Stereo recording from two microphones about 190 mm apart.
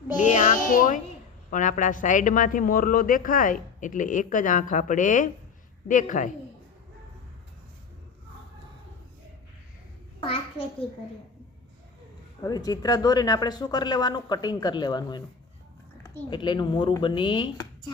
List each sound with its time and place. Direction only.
0.2 s a child's voice: 40° left (ahead or behind)
10.2 s a sound: 30° left (ahead or behind)
12.4 s speech: 20° left (ahead or behind)
16.3 s speech: 25° left (ahead or behind)